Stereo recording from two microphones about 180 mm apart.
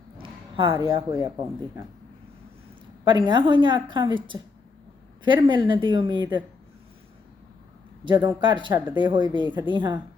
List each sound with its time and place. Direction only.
0.2 s a sound: 30° right (ahead or behind)
0.9 s a woman's voice: 25° right (ahead or behind)
3.0 s a woman's voice: 25° right (ahead or behind)
8.0 s a woman's voice: 25° right (ahead or behind)